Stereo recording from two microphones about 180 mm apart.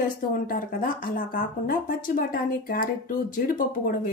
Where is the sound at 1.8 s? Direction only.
50° left (ahead or behind).